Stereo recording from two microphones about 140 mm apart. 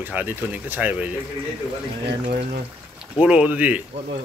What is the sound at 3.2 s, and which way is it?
Speech, 10° right (ahead or behind).